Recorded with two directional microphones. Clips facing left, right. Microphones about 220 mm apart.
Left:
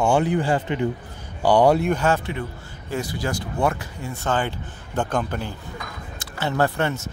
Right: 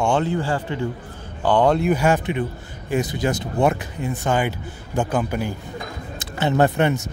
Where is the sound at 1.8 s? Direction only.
10° right (ahead or behind).